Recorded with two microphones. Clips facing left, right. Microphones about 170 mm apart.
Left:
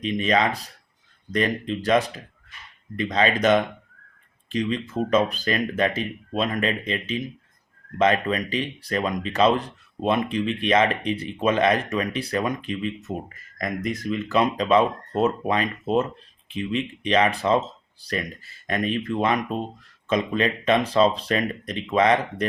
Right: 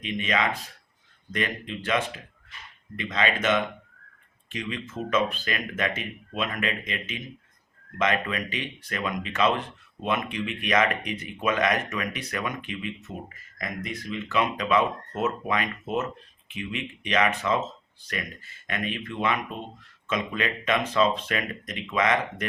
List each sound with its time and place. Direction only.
0.0 s speech: 35° left (ahead or behind)